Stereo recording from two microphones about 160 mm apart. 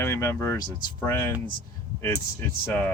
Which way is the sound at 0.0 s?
15° left (ahead or behind).